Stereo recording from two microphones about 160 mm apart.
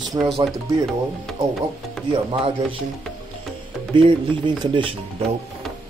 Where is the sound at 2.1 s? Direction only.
30° right (ahead or behind).